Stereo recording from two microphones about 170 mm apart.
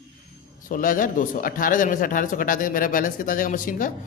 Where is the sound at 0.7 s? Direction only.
55° left (ahead or behind).